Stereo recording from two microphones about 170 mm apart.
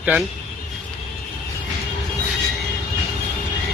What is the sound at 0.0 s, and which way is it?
Speech, 5° right (ahead or behind).